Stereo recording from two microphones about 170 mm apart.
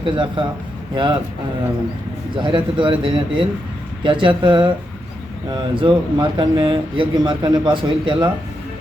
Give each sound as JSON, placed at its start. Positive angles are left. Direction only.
{"t": 0.0, "sound": "speech", "side_deg": -30}
{"t": 2.3, "sound": "speech", "side_deg": -30}